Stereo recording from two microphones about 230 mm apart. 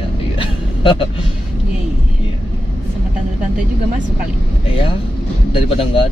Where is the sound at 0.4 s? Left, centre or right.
Left.